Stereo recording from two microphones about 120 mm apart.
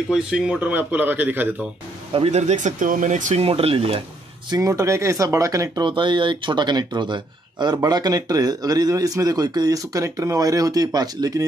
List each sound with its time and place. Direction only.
0.1 s a man's voice: 5° right (ahead or behind)
2.1 s speech: 60° right (ahead or behind); by 3.4 s 90° right
3.4 s speech: 50° right (ahead or behind)
4.5 s speech: 30° right (ahead or behind)
5.9 s speech: 45° right (ahead or behind)